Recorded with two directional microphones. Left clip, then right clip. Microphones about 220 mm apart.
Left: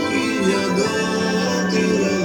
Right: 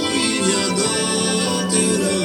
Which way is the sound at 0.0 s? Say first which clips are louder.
Even; 15° left (ahead or behind).